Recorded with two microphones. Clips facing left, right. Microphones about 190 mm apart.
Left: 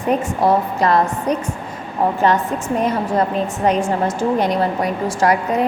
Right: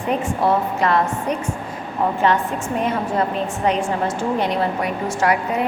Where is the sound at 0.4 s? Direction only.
40° left (ahead or behind).